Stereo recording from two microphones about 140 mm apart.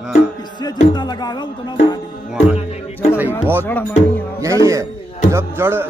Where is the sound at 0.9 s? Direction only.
30° left (ahead or behind).